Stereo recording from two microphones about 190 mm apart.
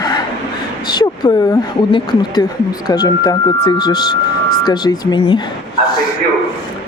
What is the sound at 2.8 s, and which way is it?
Speech, 20° left (ahead or behind).